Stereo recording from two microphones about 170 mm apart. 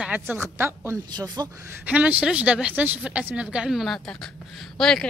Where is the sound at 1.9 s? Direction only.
10° right (ahead or behind).